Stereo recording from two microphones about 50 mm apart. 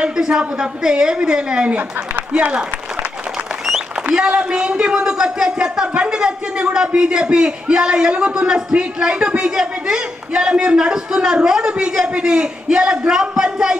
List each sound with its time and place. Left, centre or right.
0.0 s a man's voice: centre
3.6 s a man's voice: centre